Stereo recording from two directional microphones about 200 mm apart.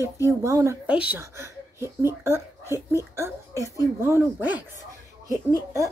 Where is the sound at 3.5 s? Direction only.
15° left (ahead or behind).